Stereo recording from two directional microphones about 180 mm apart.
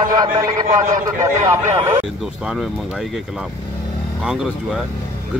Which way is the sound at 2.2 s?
5° right (ahead or behind).